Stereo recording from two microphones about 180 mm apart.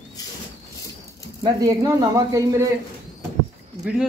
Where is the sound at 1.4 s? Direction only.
20° right (ahead or behind).